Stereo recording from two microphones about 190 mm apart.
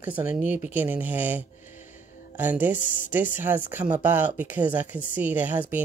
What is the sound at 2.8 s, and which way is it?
Speech, 45° left (ahead or behind).